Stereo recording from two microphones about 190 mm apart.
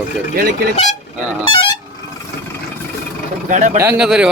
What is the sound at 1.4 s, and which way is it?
Vehicle horn, 25° left (ahead or behind).